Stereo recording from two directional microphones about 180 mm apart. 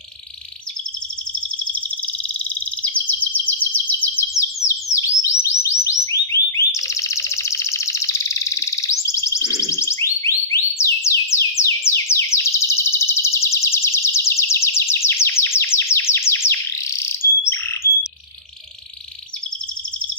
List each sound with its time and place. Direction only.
2.4 s chirp: 10° left (ahead or behind)
4.4 s bird: 15° left (ahead or behind)
4.9 s music: 15° left (ahead or behind)